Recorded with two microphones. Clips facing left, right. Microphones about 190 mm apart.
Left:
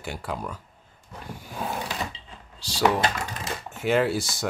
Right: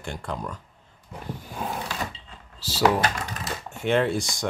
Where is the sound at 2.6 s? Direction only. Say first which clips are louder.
Right 1 dB; centre (ahead or behind).